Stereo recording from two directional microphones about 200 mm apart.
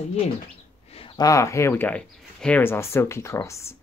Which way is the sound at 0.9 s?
25° left (ahead or behind).